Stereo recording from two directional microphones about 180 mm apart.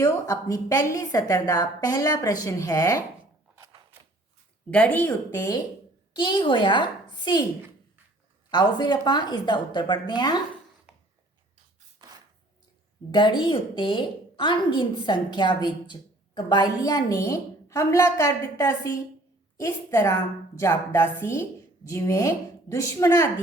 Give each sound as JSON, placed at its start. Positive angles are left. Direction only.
{"t": 0.0, "sound": "a woman's voice", "side_deg": 20}
{"t": 4.7, "sound": "a woman's voice", "side_deg": 5}
{"t": 8.4, "sound": "a woman's voice", "side_deg": 25}
{"t": 10.9, "sound": "a sound", "side_deg": -5}
{"t": 12.0, "sound": "a sound", "side_deg": -25}
{"t": 13.1, "sound": "a woman's voice", "side_deg": 25}